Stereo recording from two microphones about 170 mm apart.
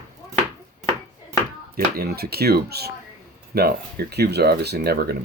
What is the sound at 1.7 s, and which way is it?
Speech, 65° right (ahead or behind).